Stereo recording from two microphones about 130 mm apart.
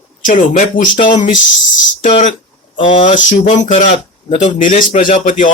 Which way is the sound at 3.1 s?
70° left (ahead or behind).